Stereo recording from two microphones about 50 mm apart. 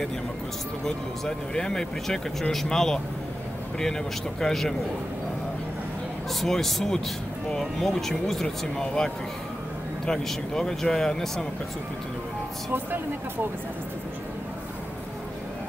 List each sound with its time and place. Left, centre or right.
0.8 s speech: centre
4.4 s speech: centre
6.4 s speech: centre
12.7 s speech: right